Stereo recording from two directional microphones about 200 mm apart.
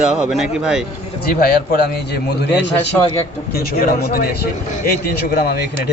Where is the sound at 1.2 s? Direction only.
50° left (ahead or behind).